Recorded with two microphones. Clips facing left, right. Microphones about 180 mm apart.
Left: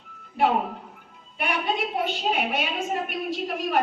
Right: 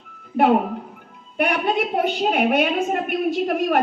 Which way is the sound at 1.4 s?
45° right (ahead or behind).